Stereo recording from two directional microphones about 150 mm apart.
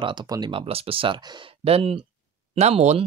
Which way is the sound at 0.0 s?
30° right (ahead or behind).